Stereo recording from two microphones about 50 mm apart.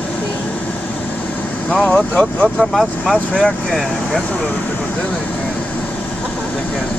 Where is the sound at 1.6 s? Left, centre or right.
Left.